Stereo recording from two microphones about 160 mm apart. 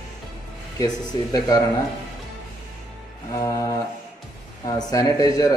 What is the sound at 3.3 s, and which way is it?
Speech, 20° left (ahead or behind).